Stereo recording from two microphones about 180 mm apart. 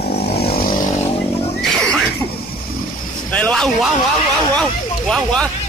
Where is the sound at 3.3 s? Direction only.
5° left (ahead or behind).